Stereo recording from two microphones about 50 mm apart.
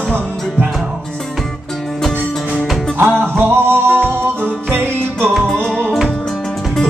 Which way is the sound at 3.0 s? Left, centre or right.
Right.